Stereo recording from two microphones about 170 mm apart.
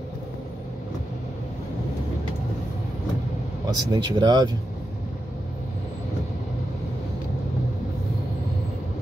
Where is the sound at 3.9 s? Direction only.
25° right (ahead or behind).